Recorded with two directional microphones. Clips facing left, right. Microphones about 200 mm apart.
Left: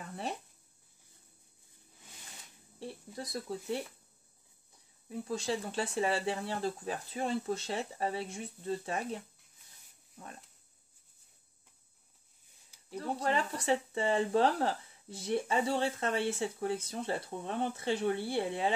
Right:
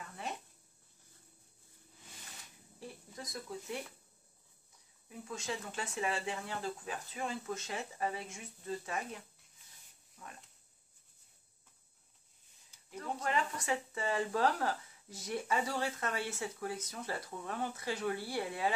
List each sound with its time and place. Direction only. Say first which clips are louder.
2.8 s speech: left 5 dB; 30° left (ahead or behind)
5.1 s speech: left 7 dB; 35° left (ahead or behind)
12.9 s speech: left 4 dB; 35° left (ahead or behind)